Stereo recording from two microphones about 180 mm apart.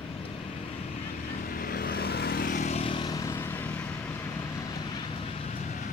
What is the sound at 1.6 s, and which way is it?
Vehicle, 60° left (ahead or behind).